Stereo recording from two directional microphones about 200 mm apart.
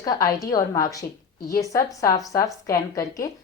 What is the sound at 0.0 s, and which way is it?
A woman's voice, 20° left (ahead or behind).